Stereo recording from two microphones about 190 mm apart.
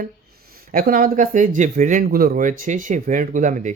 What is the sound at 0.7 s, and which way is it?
Speech, 50° right (ahead or behind).